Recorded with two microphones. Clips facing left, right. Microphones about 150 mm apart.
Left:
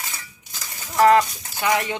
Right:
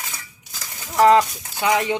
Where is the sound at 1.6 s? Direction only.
15° right (ahead or behind).